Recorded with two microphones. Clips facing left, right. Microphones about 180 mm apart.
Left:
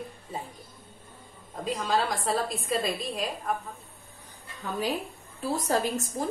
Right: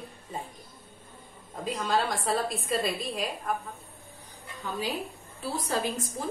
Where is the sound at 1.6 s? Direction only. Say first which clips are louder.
Left 1 dB; centre (ahead or behind).